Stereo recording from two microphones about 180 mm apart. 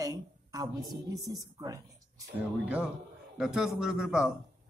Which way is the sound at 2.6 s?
5° right (ahead or behind).